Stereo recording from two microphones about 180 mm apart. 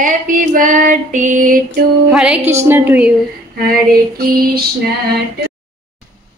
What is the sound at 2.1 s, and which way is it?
Music, 5° right (ahead or behind).